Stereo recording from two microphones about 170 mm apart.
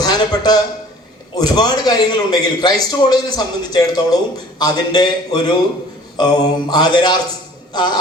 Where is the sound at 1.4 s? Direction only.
25° left (ahead or behind).